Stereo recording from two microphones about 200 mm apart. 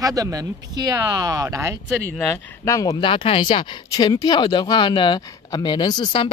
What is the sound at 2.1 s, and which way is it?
Speech, 5° left (ahead or behind).